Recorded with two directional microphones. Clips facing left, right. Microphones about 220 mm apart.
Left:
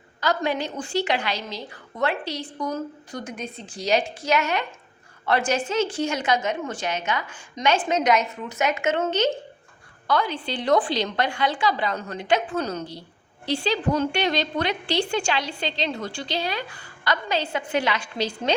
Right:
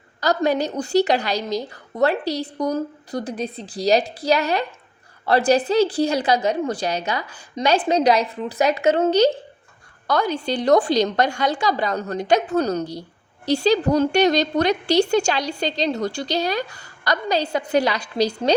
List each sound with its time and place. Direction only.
0.2 s a woman's voice: 40° right (ahead or behind)